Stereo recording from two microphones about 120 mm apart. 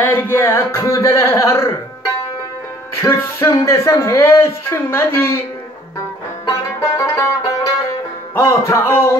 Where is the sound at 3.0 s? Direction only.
20° left (ahead or behind).